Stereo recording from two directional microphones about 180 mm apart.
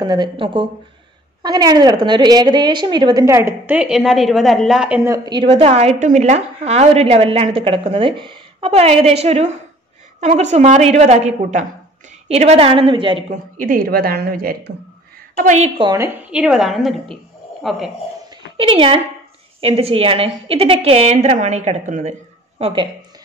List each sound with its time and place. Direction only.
0.0 s a woman's voice: 25° right (ahead or behind)
13.3 s a woman's voice: 50° right (ahead or behind)
15.3 s a woman's voice: 40° right (ahead or behind)
15.8 s a woman's voice: 20° right (ahead or behind)
16.2 s a woman's voice: 5° right (ahead or behind)
18.3 s a sound: 30° right (ahead or behind)
19.6 s a woman's voice: 30° right (ahead or behind)
22.6 s a woman's voice: 30° right (ahead or behind)